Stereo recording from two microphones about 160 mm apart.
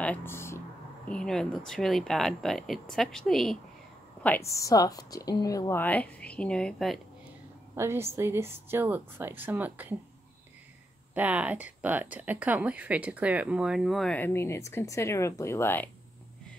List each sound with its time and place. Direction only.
0.0 s speech: 10° left (ahead or behind)
1.0 s a woman's voice: 5° left (ahead or behind)
4.2 s a woman's voice: 15° left (ahead or behind)
7.7 s speech: 15° right (ahead or behind)
11.1 s speech: 10° right (ahead or behind); by 15.9 s 15° left (ahead or behind)